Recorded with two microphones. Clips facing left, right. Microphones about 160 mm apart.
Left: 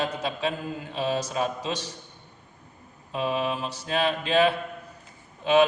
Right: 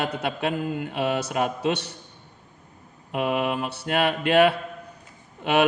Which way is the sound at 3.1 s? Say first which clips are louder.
Right 3 dB; 65° right (ahead or behind).